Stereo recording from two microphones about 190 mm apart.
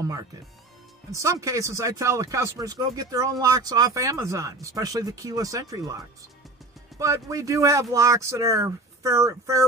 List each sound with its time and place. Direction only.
0.0 s speech: 20° right (ahead or behind)